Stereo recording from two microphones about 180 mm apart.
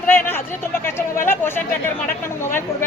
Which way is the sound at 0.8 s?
15° left (ahead or behind).